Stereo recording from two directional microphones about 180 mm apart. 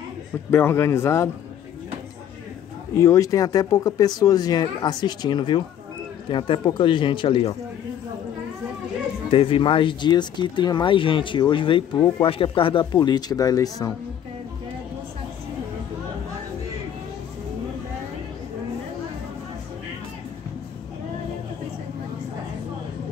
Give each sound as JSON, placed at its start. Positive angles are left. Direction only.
{"t": 0.5, "sound": "speech", "side_deg": 15}
{"t": 3.0, "sound": "speech", "side_deg": 20}
{"t": 9.3, "sound": "speech", "side_deg": 30}